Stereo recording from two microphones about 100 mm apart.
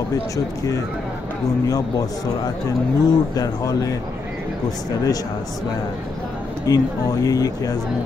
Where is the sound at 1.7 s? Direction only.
40° left (ahead or behind).